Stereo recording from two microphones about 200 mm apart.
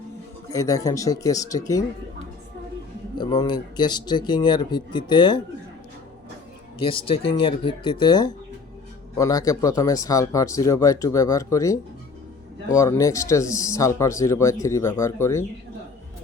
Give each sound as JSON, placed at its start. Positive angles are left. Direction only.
{"t": 0.5, "sound": "speech", "side_deg": 15}
{"t": 3.2, "sound": "speech", "side_deg": 20}
{"t": 6.7, "sound": "speech", "side_deg": 25}